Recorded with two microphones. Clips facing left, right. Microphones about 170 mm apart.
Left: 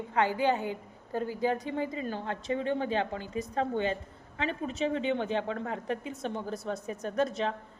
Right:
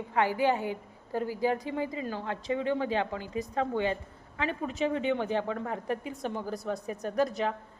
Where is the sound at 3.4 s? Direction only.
35° left (ahead or behind).